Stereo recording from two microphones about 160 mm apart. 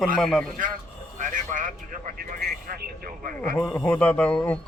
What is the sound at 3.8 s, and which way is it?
Speech, 5° left (ahead or behind).